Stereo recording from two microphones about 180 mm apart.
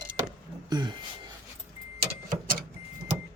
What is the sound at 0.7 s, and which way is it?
Speech, 25° right (ahead or behind).